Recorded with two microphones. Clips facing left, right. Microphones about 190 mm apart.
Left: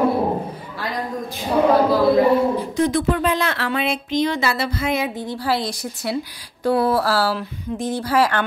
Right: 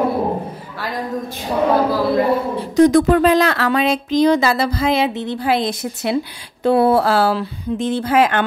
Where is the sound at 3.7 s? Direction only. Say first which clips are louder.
Right 5 dB; 90° right.